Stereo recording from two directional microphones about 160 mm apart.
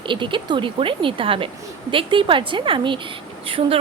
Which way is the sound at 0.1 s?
30° right (ahead or behind).